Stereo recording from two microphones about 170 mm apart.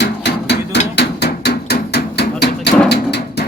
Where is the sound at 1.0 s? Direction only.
75° left (ahead or behind).